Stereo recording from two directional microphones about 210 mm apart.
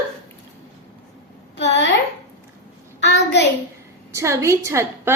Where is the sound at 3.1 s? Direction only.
55° left (ahead or behind).